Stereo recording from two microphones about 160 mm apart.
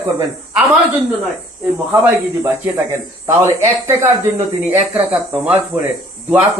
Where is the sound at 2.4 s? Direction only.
15° right (ahead or behind).